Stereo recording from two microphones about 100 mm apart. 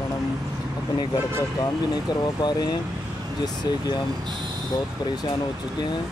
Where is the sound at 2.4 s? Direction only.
45° left (ahead or behind).